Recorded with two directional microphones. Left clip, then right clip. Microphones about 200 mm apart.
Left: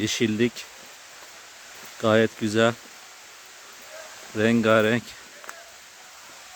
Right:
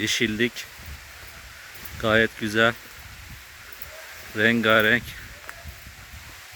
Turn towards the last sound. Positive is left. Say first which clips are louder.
# right 1 dB
turn(degrees=10)  # may be behind; listen again after turning